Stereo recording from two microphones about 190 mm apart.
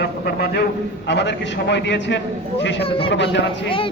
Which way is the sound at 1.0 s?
65° left (ahead or behind).